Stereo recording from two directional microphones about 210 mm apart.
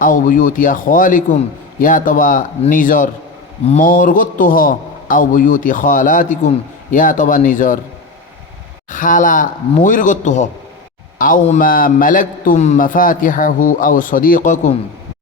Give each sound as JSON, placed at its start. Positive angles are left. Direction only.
{"t": 0.0, "sound": "a man's voice", "side_deg": 40}
{"t": 8.9, "sound": "a man's voice", "side_deg": 40}